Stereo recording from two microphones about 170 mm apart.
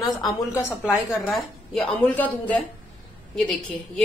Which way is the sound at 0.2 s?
15° left (ahead or behind).